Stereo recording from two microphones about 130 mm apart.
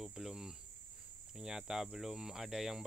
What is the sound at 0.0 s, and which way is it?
Cricket, 5° right (ahead or behind).